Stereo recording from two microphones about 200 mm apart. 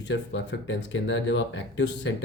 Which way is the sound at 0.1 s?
65° left (ahead or behind).